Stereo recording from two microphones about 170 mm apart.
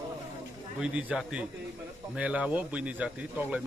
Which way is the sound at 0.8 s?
5° right (ahead or behind).